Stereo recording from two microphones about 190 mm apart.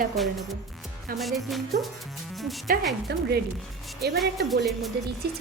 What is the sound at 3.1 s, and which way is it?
Speech, 60° right (ahead or behind).